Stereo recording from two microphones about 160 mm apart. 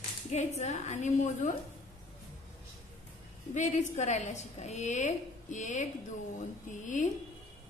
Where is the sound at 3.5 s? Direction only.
50° left (ahead or behind).